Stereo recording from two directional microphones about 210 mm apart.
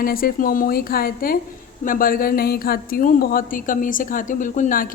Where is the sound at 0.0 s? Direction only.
45° left (ahead or behind).